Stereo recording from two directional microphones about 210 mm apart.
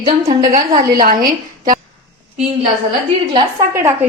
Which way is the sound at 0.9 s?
45° right (ahead or behind).